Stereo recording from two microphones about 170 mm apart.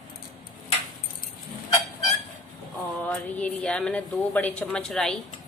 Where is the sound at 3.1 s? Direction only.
5° left (ahead or behind).